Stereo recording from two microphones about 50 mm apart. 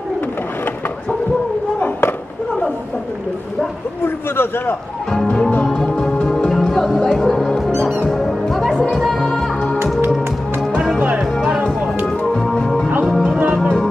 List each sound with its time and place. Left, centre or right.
4.0 s a man's voice: left
5.1 s music: centre
12.2 s music: centre
13.0 s music: centre